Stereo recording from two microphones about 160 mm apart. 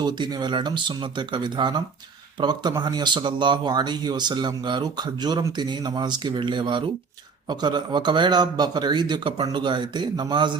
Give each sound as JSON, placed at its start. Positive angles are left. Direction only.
{"t": 0.0, "sound": "speech", "side_deg": -25}